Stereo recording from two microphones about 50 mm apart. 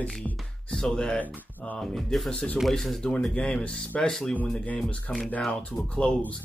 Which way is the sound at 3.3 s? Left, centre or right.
Left.